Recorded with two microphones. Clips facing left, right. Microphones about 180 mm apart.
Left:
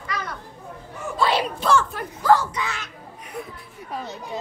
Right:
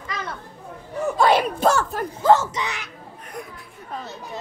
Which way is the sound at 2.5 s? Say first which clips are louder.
Right 1 dB; 20° right (ahead or behind).